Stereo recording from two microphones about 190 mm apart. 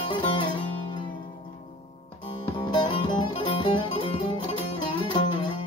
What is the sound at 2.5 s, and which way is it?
Music, 25° left (ahead or behind).